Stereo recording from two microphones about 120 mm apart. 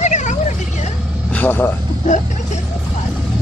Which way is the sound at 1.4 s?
15° left (ahead or behind).